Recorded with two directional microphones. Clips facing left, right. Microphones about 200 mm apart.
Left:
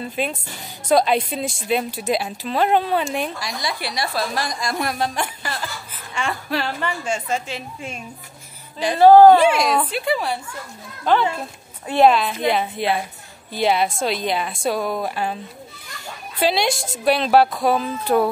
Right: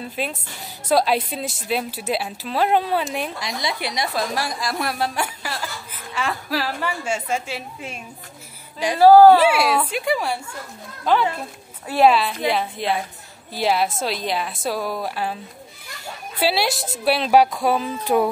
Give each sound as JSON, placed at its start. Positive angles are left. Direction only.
{"t": 0.0, "sound": "speech", "side_deg": 0}
{"t": 3.3, "sound": "a woman's voice", "side_deg": -20}
{"t": 16.3, "sound": "a woman's voice", "side_deg": -5}